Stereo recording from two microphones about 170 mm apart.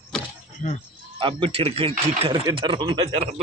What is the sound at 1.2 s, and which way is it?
Speech, 30° right (ahead or behind).